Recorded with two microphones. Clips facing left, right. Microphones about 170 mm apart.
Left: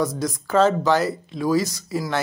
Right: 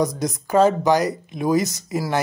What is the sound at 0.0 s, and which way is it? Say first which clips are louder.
Speech: right 2 dB; 20° right (ahead or behind).